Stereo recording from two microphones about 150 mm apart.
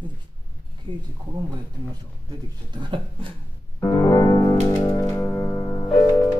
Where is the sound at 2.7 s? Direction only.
35° right (ahead or behind).